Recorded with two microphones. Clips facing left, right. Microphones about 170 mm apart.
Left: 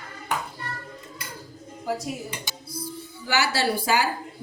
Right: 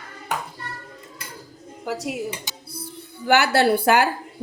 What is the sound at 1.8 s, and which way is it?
Speech, 75° right (ahead or behind).